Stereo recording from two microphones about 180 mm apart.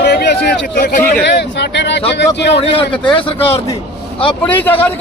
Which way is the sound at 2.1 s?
75° left (ahead or behind).